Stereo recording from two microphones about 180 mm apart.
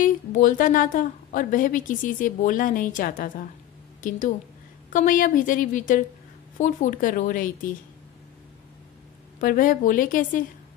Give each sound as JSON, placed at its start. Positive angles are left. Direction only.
{"t": 0.0, "sound": "a woman's voice", "side_deg": 45}
{"t": 4.9, "sound": "a woman's voice", "side_deg": 50}
{"t": 9.4, "sound": "a woman's voice", "side_deg": 50}